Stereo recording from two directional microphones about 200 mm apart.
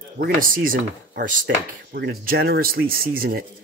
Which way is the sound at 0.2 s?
45° right (ahead or behind).